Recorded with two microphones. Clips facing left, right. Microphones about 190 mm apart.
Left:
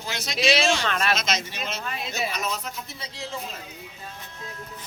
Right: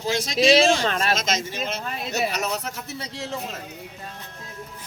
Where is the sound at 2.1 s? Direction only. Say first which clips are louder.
Right 5 dB; 70° right (ahead or behind).